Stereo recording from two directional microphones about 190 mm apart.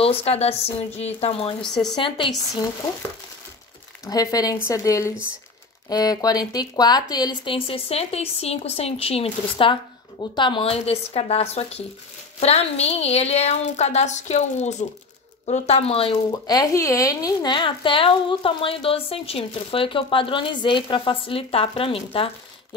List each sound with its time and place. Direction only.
0.0 s a woman's voice: 30° left (ahead or behind)
4.0 s a woman's voice: 20° left (ahead or behind)